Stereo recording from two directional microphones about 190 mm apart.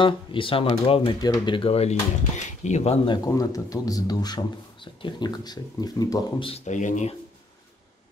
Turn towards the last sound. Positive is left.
turn(degrees=40)  # may be behind; listen again after turning